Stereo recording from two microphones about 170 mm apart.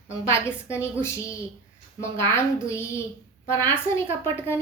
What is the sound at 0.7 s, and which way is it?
A woman's voice, 15° left (ahead or behind).